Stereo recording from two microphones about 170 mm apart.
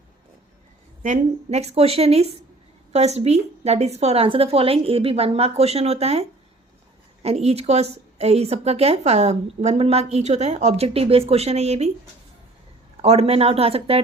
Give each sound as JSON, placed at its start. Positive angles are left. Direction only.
{"t": 1.0, "sound": "a woman's voice", "side_deg": -45}
{"t": 13.0, "sound": "a woman's voice", "side_deg": -35}